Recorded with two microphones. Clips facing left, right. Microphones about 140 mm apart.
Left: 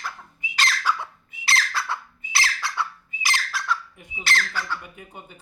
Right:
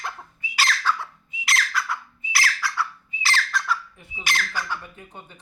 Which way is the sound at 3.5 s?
5° left (ahead or behind).